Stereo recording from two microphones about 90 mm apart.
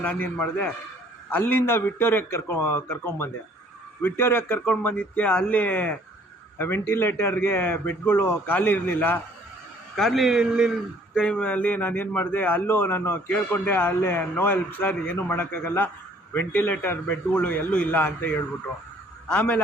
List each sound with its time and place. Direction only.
0.0 s a man's voice: 20° left (ahead or behind)
9.9 s a man's voice: 5° left (ahead or behind)
11.1 s a man's voice: 10° left (ahead or behind)